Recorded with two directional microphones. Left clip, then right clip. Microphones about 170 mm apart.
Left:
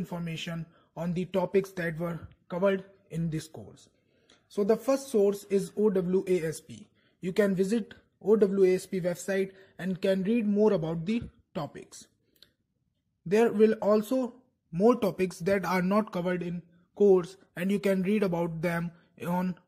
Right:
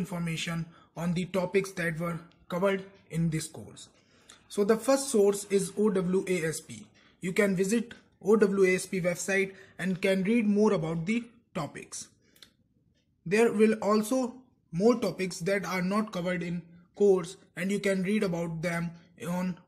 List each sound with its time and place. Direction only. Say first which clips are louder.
0.0 s speech: right 2 dB; 35° left (ahead or behind); by 10.8 s 20° left (ahead or behind)
10.8 s a man's voice: even; 35° left (ahead or behind)
13.3 s speech: left 1 dB; 35° left (ahead or behind)
14.2 s speech: right 1 dB; 45° left (ahead or behind)